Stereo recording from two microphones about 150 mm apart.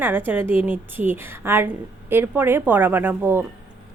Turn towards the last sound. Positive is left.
turn(degrees=-15)  # may be behind; listen again after turning